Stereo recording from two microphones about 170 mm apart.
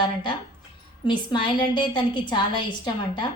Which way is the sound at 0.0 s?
25° left (ahead or behind).